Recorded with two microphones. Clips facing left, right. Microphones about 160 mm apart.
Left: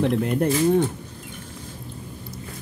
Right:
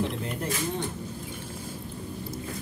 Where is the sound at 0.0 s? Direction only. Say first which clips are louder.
Left 9 dB; 60° left (ahead or behind).